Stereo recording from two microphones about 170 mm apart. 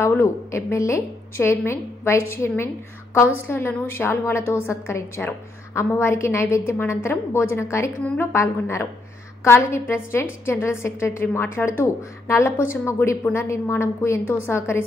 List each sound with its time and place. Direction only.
0.0 s a woman's voice: 15° left (ahead or behind)